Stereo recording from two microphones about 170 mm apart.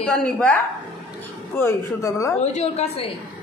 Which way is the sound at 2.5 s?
40° left (ahead or behind).